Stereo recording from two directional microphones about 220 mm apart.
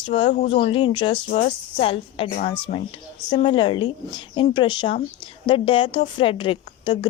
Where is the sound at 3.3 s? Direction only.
20° left (ahead or behind).